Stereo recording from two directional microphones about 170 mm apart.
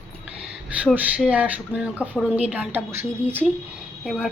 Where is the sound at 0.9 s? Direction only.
5° right (ahead or behind).